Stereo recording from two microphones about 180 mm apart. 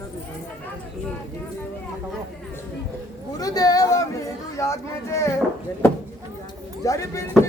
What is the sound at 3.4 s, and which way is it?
Speech, 20° left (ahead or behind).